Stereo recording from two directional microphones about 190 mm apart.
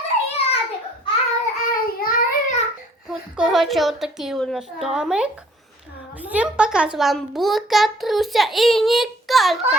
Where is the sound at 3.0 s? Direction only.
Centre (ahead or behind).